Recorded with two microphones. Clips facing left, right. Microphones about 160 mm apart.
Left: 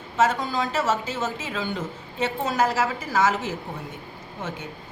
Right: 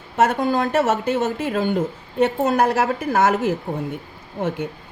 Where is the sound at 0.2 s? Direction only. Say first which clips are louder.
Right 4 dB; 55° right (ahead or behind).